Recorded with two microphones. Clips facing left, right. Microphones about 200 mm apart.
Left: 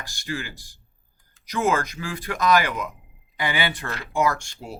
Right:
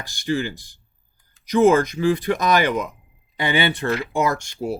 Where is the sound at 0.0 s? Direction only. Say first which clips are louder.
Right 8 dB; 20° right (ahead or behind).